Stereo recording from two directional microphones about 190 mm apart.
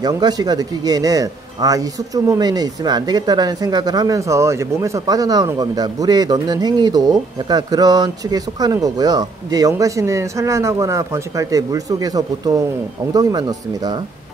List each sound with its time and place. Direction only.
0.0 s a man's voice: 20° right (ahead or behind)